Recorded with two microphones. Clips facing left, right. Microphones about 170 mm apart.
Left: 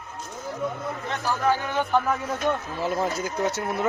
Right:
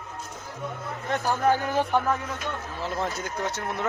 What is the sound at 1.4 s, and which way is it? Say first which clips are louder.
Speech: right 1 dB; 40° right (ahead or behind).